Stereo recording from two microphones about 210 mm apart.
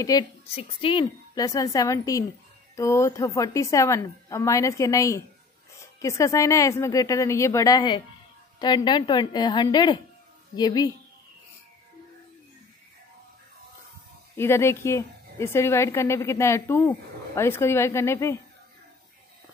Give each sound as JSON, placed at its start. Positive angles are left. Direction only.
{"t": 0.0, "sound": "a woman's voice", "side_deg": 20}
{"t": 14.3, "sound": "a woman's voice", "side_deg": 10}